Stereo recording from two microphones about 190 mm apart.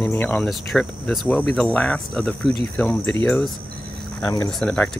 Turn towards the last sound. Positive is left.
turn(degrees=0)  # may be behind; listen again after turning